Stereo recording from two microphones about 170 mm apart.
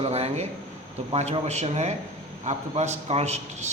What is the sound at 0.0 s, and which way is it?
A man's voice, 40° right (ahead or behind).